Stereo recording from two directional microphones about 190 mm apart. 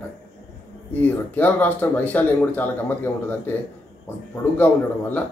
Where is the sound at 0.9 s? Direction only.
10° left (ahead or behind).